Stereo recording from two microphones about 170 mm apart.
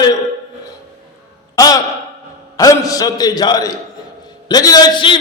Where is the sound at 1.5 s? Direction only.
20° left (ahead or behind).